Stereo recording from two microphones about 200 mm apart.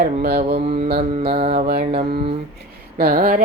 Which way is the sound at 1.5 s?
50° right (ahead or behind).